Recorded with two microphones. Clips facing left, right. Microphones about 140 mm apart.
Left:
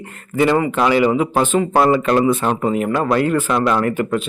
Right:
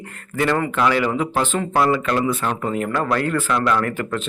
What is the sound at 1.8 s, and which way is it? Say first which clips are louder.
Speech: left 4 dB; 30° left (ahead or behind).